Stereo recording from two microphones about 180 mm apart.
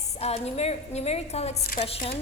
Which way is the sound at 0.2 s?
35° left (ahead or behind).